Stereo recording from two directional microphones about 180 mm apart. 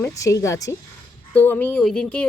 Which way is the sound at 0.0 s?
15° left (ahead or behind).